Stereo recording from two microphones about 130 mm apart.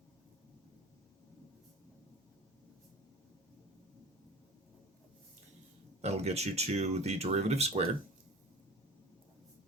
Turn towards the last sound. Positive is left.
turn(degrees=-55)  # may be behind; listen again after turning